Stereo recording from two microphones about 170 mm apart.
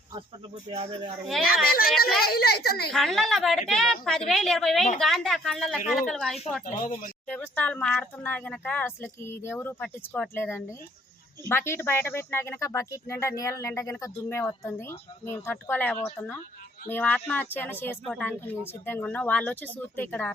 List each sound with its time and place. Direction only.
0.7 s speech: 35° right (ahead or behind)
2.2 s a woman's voice: 65° left (ahead or behind)
2.9 s a woman's voice: centre (ahead or behind)
6.7 s speech: 45° left (ahead or behind)
7.3 s speech: 10° left (ahead or behind)